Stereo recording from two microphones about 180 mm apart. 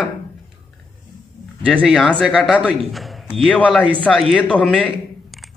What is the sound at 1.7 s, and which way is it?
A man's voice, centre (ahead or behind).